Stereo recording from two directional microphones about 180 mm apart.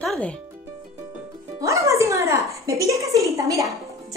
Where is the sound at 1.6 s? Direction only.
15° right (ahead or behind).